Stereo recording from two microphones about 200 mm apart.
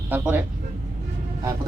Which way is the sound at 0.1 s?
10° right (ahead or behind).